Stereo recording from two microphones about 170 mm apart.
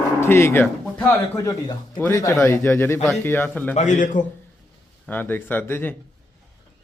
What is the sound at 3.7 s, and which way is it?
Speech, 45° left (ahead or behind).